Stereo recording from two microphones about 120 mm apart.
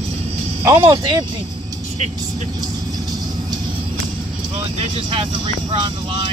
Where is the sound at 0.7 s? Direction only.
30° right (ahead or behind).